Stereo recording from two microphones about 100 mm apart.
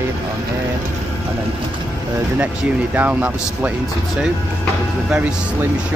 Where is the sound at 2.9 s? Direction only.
15° right (ahead or behind).